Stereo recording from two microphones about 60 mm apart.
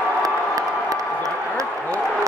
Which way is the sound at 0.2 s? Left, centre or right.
Right.